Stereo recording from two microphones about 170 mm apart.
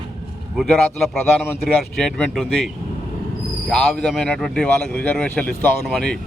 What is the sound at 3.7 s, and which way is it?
Speech, 5° left (ahead or behind).